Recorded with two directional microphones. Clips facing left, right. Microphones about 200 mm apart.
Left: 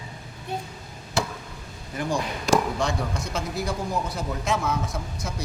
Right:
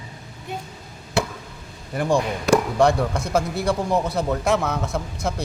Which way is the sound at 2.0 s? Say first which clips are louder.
Right 6 dB; 55° right (ahead or behind).